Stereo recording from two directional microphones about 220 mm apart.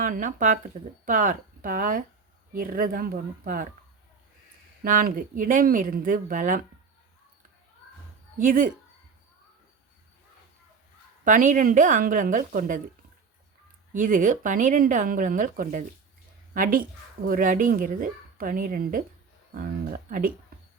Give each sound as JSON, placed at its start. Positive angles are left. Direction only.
{"t": 0.0, "sound": "speech", "side_deg": -35}
{"t": 4.8, "sound": "speech", "side_deg": -40}
{"t": 8.4, "sound": "speech", "side_deg": -35}
{"t": 11.3, "sound": "speech", "side_deg": -35}
{"t": 13.9, "sound": "speech", "side_deg": -35}